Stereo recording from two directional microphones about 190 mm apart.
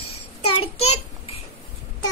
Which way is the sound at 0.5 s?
30° left (ahead or behind).